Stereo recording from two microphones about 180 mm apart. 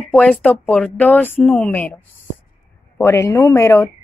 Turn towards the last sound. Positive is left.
turn(degrees=15)  # may be behind; listen again after turning